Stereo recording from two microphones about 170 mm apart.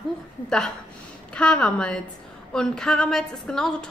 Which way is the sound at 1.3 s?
5° left (ahead or behind).